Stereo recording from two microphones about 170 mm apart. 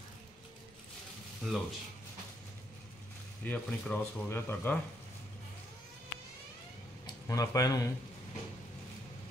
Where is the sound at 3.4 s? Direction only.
10° left (ahead or behind).